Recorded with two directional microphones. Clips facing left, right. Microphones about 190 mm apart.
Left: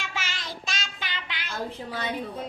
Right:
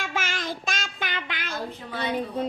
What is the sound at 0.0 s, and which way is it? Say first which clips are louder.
Child singing: right 6 dB; 50° right (ahead or behind).